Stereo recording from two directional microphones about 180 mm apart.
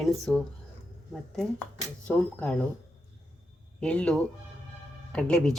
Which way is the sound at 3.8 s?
5° left (ahead or behind).